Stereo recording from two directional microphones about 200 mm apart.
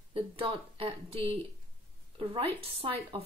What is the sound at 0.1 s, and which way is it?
Speech, 25° right (ahead or behind).